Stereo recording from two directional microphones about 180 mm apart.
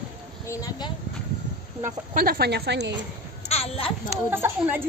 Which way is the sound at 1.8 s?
55° right (ahead or behind).